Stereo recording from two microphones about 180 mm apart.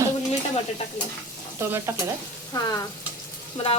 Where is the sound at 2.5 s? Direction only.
20° left (ahead or behind).